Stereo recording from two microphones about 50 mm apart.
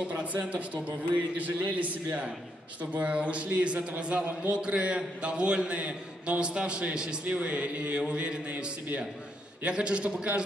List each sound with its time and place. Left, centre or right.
0.1 s a man's voice: right